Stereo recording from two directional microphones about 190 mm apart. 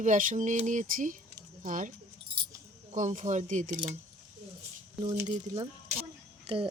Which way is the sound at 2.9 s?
40° right (ahead or behind).